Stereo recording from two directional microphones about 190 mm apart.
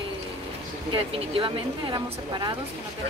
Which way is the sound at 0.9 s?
30° right (ahead or behind).